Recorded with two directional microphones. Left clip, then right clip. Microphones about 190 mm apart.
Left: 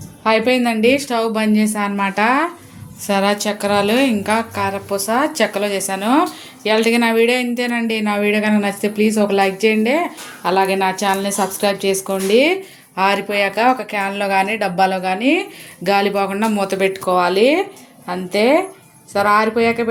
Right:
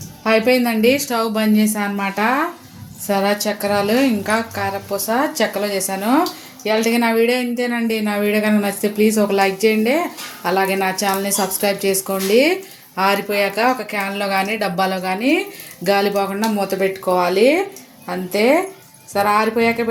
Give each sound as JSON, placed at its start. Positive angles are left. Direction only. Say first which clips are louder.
{"t": 0.3, "sound": "speech", "louder": "even", "side_deg": 0}